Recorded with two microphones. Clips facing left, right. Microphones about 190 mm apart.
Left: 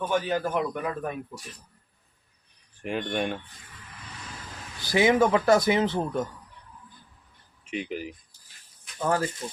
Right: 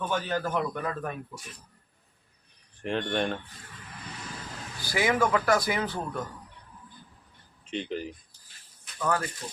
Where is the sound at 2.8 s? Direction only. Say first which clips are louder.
Even; 5° left (ahead or behind).